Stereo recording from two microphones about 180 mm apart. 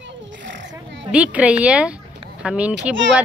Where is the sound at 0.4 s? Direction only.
90° right.